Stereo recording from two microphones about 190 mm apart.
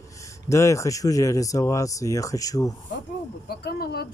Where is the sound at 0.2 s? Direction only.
15° left (ahead or behind).